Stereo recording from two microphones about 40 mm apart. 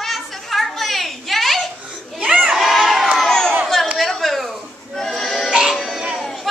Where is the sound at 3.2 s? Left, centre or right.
Centre.